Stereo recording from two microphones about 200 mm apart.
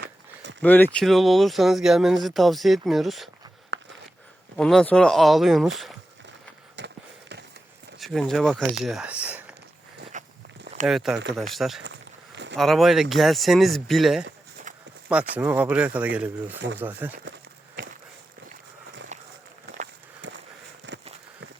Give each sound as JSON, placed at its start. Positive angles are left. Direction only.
{"t": 0.6, "sound": "speech", "side_deg": 10}
{"t": 3.7, "sound": "a sound", "side_deg": -65}
{"t": 4.5, "sound": "speech", "side_deg": 5}
{"t": 6.7, "sound": "a sound", "side_deg": -60}
{"t": 7.9, "sound": "speech", "side_deg": 0}
{"t": 10.1, "sound": "walk", "side_deg": -40}
{"t": 10.8, "sound": "speech", "side_deg": 0}
{"t": 14.7, "sound": "walk", "side_deg": -40}
{"t": 15.4, "sound": "speech", "side_deg": -10}
{"t": 19.1, "sound": "run", "side_deg": -35}
{"t": 20.2, "sound": "walk", "side_deg": -65}
{"t": 20.9, "sound": "a sound", "side_deg": -60}